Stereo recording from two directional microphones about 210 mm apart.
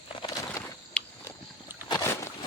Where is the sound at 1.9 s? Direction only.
15° left (ahead or behind).